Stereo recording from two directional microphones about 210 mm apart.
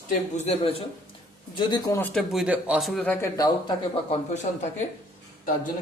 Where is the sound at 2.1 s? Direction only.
Centre (ahead or behind).